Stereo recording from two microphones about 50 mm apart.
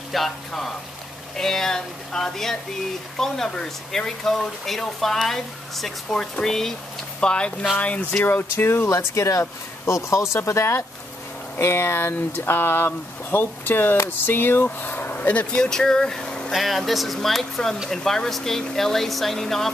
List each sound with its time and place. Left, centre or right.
0.1 s speech: centre
7.2 s speech: centre
8.3 s speech: left
8.8 s speech: left
11.5 s speech: left
15.5 s speech: centre
16.5 s speech: centre